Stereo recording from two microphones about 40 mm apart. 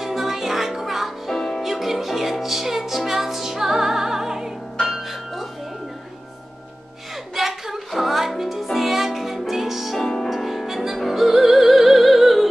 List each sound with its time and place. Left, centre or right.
0.0 s music: centre
7.3 s music: centre
10.0 s music: centre